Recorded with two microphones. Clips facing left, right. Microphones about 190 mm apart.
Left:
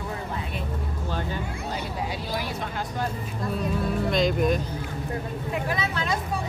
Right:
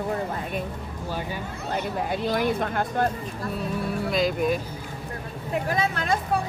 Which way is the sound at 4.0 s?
5° right (ahead or behind).